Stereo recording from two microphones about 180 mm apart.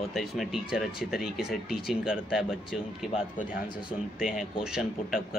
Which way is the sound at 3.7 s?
25° left (ahead or behind).